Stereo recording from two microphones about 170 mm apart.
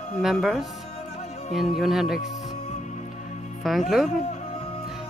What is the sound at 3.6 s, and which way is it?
Speech, centre (ahead or behind).